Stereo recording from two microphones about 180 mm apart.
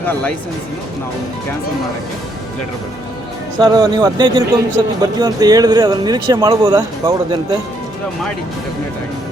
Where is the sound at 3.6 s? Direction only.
25° right (ahead or behind).